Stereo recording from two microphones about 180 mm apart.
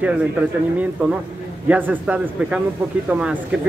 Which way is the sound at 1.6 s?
10° right (ahead or behind).